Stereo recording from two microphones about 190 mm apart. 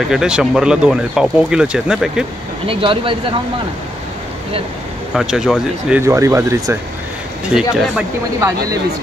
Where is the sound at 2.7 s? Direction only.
30° right (ahead or behind).